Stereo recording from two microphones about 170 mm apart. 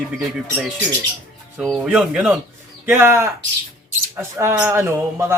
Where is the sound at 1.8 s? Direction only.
10° right (ahead or behind).